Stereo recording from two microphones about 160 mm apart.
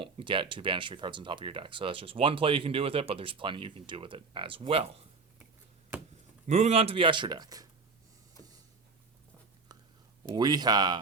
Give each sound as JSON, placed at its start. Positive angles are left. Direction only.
{"t": 0.0, "sound": "speech", "side_deg": -30}
{"t": 6.5, "sound": "speech", "side_deg": -45}
{"t": 10.2, "sound": "speech", "side_deg": -25}